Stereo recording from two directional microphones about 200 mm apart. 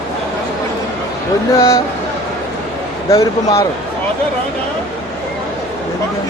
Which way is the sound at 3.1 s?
15° left (ahead or behind).